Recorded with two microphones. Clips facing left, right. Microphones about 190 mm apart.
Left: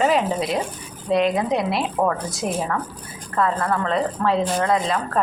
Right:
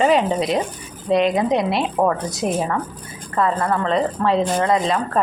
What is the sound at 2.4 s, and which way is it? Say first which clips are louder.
Speech: right 4 dB; 35° right (ahead or behind).